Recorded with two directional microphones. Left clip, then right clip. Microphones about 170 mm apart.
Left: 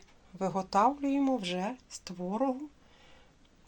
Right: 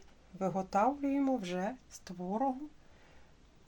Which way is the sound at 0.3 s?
5° right (ahead or behind).